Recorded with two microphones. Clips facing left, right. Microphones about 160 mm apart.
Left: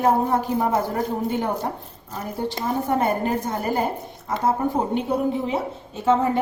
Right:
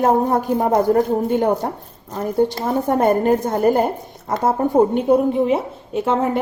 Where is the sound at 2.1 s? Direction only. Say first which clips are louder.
Right 9 dB; 50° right (ahead or behind).